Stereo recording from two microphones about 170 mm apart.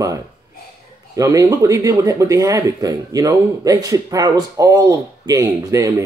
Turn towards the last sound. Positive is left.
turn(degrees=-15)  # may be behind; listen again after turning